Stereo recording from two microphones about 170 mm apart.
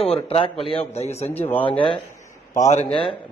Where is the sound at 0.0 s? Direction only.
35° left (ahead or behind).